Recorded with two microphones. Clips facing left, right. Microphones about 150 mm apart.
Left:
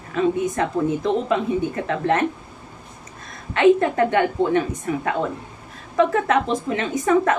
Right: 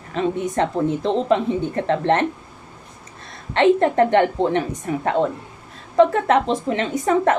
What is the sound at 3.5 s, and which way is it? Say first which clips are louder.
A woman's voice: right 1 dB; 30° right (ahead or behind).